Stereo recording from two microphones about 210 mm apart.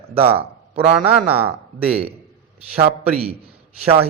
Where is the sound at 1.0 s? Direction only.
10° right (ahead or behind).